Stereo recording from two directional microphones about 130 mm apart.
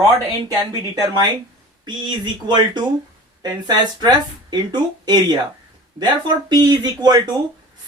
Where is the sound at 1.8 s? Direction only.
35° right (ahead or behind).